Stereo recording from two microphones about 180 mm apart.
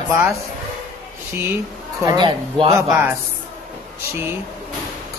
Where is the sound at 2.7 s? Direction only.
20° right (ahead or behind).